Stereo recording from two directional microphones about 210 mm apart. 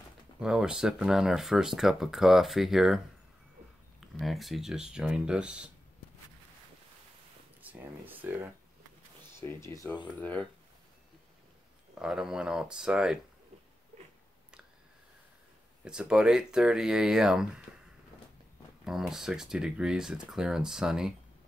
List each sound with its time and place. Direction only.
0.4 s speech: 5° right (ahead or behind)
4.0 s speech: centre (ahead or behind)
7.6 s speech: 10° right (ahead or behind)
9.4 s speech: 15° left (ahead or behind)
12.0 s speech: 5° right (ahead or behind)
15.8 s speech: 5° right (ahead or behind)
18.9 s speech: centre (ahead or behind)